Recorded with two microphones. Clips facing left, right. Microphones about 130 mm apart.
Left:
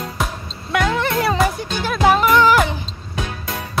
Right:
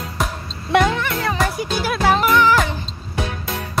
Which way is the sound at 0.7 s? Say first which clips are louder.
Right 4 dB; 30° right (ahead or behind).